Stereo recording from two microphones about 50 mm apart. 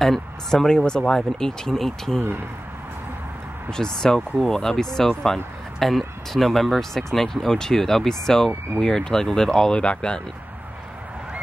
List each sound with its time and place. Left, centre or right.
0.0 s speech: centre
3.7 s speech: centre